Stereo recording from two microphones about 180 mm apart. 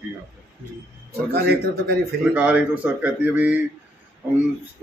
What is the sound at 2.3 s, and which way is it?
Speech, 10° right (ahead or behind).